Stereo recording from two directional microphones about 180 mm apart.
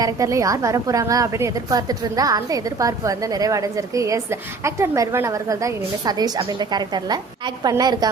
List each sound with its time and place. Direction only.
0.0 s a woman's voice: 15° right (ahead or behind)